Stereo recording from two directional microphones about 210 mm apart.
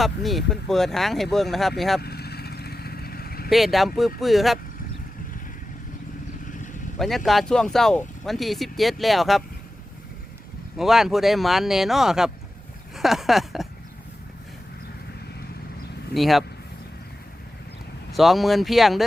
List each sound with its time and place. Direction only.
0.0 s speech: centre (ahead or behind)
2.0 s vehicle: 50° left (ahead or behind)
3.5 s speech: centre (ahead or behind)
7.3 s speech: centre (ahead or behind)
10.8 s speech: centre (ahead or behind)
16.1 s speech: centre (ahead or behind)
18.1 s speech: centre (ahead or behind)